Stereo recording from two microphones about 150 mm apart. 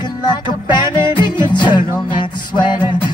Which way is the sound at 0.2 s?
30° left (ahead or behind).